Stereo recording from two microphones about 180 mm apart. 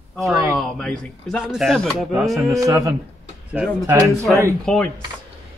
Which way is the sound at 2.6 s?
20° right (ahead or behind).